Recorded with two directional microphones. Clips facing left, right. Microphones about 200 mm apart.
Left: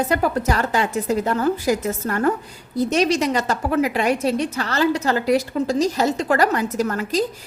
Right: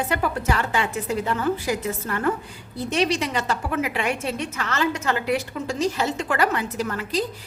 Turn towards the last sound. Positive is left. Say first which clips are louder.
# left 5 dB
turn(degrees=45)  # may be behind; listen again after turning